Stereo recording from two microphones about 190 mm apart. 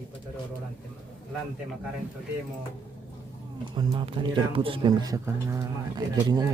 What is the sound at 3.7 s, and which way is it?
Speech, 25° right (ahead or behind).